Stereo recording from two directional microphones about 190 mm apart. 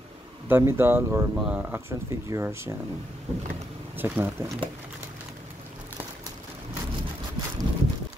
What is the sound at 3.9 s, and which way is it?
Speech, 10° right (ahead or behind).